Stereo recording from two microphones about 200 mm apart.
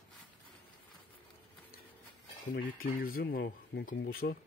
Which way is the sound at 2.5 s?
50° left (ahead or behind).